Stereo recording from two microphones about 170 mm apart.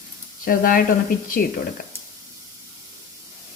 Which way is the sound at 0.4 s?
55° left (ahead or behind).